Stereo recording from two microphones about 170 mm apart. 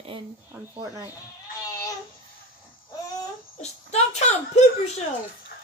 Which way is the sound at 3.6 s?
40° left (ahead or behind).